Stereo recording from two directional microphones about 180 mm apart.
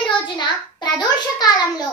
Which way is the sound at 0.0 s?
25° left (ahead or behind).